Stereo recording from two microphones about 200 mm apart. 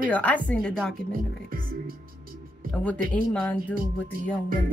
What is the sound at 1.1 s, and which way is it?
Speech, 45° right (ahead or behind).